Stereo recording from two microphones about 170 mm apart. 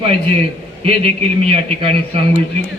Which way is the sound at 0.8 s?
35° right (ahead or behind).